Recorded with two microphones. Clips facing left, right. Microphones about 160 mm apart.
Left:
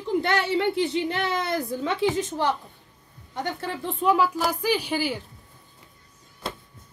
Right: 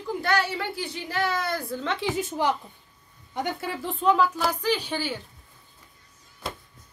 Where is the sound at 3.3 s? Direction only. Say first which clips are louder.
Even; 10° right (ahead or behind).